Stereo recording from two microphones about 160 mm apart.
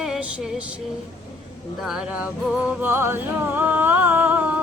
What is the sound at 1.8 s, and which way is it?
Music, 5° right (ahead or behind).